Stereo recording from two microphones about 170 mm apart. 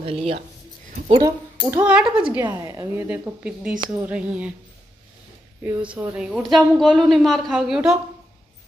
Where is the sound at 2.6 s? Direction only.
20° right (ahead or behind).